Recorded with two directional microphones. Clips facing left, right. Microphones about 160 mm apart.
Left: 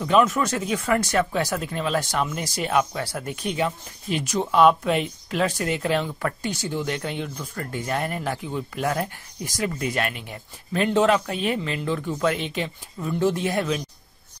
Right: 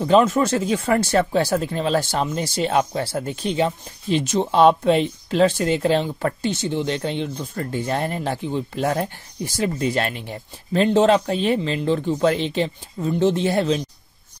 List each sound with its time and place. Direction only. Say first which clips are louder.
0.0 s speech: right 4 dB; 30° right (ahead or behind)